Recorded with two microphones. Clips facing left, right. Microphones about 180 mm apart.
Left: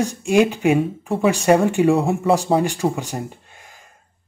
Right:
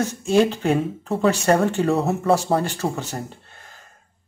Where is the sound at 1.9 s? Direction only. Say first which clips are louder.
Left 3 dB; centre (ahead or behind).